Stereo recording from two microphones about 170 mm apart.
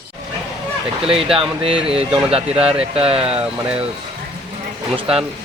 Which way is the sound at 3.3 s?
5° right (ahead or behind).